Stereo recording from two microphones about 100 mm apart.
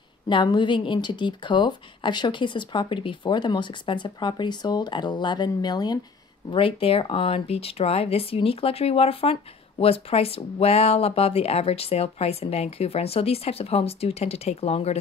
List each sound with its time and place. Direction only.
0.3 s speech: 55° left (ahead or behind)
6.5 s speech: 65° left (ahead or behind); by 15.0 s 90° left